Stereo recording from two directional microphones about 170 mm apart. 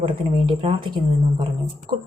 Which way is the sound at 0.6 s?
35° right (ahead or behind).